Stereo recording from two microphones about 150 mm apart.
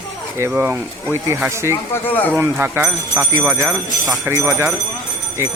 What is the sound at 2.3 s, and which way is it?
Speech, 15° right (ahead or behind).